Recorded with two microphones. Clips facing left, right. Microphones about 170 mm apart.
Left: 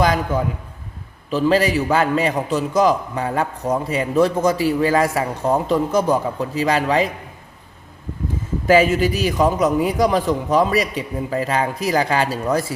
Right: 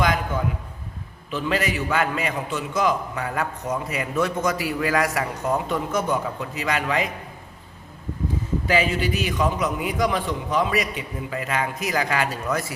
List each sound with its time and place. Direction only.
1.3 s a man's voice: 35° left (ahead or behind)
8.6 s a man's voice: 45° left (ahead or behind)